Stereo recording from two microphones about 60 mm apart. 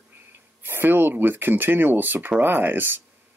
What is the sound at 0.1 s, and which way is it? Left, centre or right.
Speech, right.